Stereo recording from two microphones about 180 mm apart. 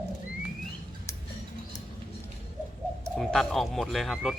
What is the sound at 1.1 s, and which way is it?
Tick-tock, 15° left (ahead or behind).